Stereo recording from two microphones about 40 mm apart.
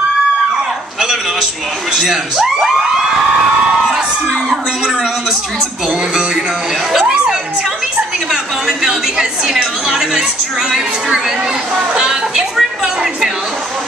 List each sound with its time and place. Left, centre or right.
1.9 s a man's voice: centre
7.0 s crowd: right
8.3 s a woman's voice: centre
12.0 s a man's voice: centre
12.5 s a sound: centre